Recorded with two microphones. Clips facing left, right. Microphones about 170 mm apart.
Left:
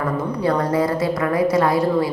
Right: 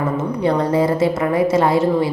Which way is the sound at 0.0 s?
25° right (ahead or behind).